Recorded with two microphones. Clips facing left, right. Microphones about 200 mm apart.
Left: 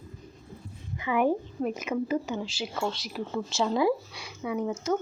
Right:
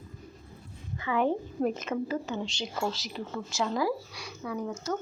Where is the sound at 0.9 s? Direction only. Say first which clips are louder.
Left 2 dB; 15° left (ahead or behind).